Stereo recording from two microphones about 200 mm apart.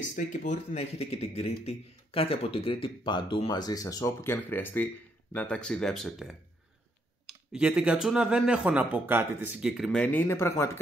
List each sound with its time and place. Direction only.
0.1 s a man's voice: 40° left (ahead or behind); by 6.3 s centre (ahead or behind)
7.5 s a man's voice: 5° right (ahead or behind)
9.8 s speech: 10° left (ahead or behind)